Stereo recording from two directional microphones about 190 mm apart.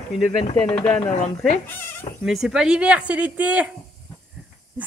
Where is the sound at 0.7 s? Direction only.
5° left (ahead or behind).